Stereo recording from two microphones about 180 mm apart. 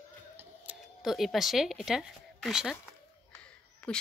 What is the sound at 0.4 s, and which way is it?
A woman's voice, 5° right (ahead or behind).